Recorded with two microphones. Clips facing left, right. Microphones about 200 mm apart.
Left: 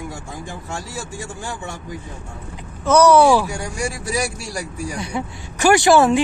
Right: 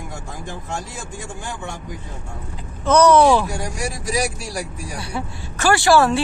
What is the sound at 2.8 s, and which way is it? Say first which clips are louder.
Speech: left 1 dB; 10° left (ahead or behind).